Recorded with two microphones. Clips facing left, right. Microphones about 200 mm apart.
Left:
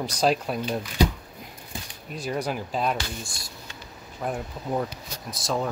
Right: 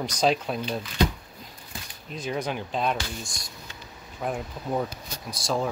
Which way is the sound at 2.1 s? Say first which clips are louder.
Left 1 dB; 10° left (ahead or behind).